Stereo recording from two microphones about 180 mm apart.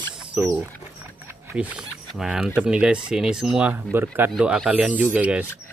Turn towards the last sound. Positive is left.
turn(degrees=-5)  # may be behind; listen again after turning